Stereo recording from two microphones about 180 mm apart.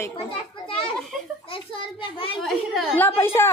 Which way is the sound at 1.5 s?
30° left (ahead or behind).